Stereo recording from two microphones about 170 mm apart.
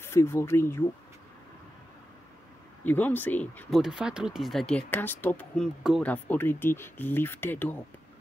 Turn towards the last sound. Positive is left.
turn(degrees=10)  # may be behind; listen again after turning